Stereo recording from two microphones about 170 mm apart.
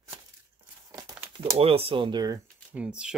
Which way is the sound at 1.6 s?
35° right (ahead or behind).